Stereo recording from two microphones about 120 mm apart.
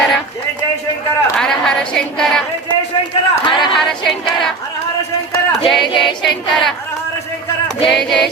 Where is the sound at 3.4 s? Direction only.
40° left (ahead or behind).